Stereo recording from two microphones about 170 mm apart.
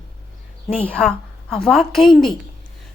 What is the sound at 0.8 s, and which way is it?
A woman's voice, 5° left (ahead or behind).